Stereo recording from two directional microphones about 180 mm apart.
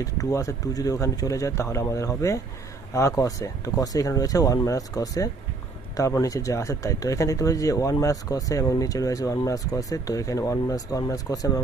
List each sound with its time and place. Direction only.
0.0 s speech: 15° left (ahead or behind)